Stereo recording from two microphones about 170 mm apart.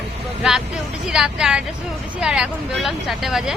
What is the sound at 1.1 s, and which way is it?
Speech, 5° right (ahead or behind).